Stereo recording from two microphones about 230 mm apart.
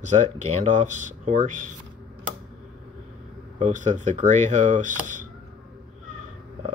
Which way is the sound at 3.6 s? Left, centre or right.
Right.